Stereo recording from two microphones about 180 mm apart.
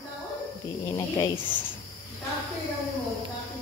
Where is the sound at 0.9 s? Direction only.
15° left (ahead or behind).